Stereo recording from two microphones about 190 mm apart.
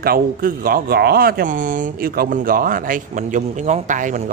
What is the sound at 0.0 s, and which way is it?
Speech, 50° right (ahead or behind).